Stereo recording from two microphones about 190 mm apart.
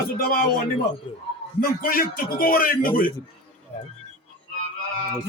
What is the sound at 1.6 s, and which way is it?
A man's voice, 50° left (ahead or behind).